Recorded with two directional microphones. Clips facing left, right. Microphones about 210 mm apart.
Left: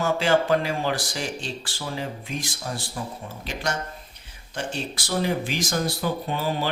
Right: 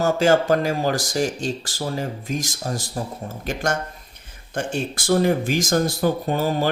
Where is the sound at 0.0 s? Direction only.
45° right (ahead or behind).